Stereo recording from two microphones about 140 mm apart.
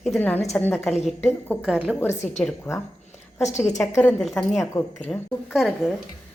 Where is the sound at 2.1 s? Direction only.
55° left (ahead or behind).